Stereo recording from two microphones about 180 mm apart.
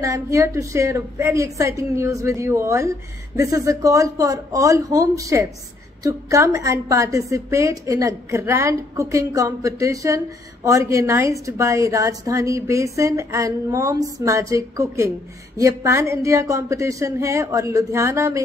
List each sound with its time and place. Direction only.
0.0 s a woman's voice: 20° right (ahead or behind)